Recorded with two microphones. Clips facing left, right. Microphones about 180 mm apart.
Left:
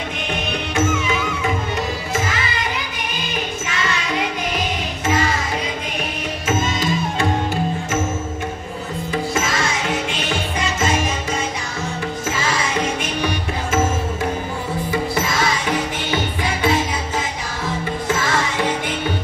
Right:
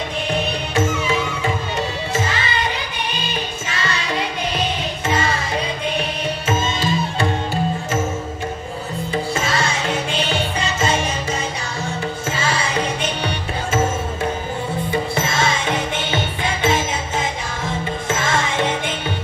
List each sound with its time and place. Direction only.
0.7 s music: 35° right (ahead or behind)
6.4 s music: 30° right (ahead or behind)
9.3 s music: 30° right (ahead or behind)
12.3 s music: 30° right (ahead or behind)
14.9 s music: 25° right (ahead or behind)
18.0 s music: 25° right (ahead or behind)